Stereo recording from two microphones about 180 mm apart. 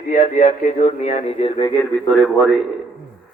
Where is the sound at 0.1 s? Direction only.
40° left (ahead or behind).